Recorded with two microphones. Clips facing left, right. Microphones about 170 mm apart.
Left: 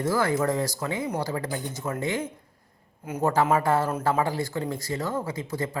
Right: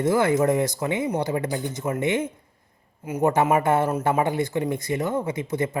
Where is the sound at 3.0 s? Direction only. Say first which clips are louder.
Right 4 dB; 10° right (ahead or behind).